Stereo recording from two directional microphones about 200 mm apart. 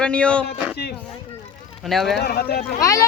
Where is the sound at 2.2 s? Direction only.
50° left (ahead or behind).